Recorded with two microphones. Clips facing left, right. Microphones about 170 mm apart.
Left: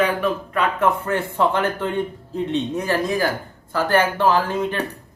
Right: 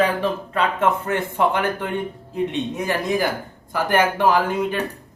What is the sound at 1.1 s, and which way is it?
Speech, 15° right (ahead or behind).